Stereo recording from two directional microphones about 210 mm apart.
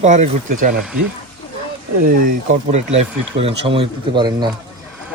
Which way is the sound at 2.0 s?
35° right (ahead or behind).